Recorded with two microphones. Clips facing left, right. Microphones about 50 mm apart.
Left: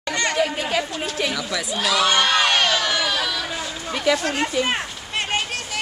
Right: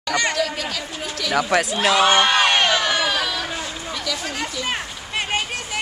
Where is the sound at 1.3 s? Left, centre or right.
Right.